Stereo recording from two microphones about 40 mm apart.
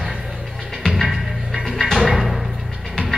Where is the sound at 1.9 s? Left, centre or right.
Centre.